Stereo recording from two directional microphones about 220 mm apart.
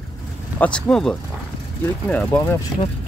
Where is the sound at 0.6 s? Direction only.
5° left (ahead or behind).